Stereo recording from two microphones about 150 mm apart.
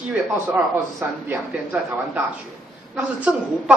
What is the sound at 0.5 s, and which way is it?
A woman's voice, 15° right (ahead or behind).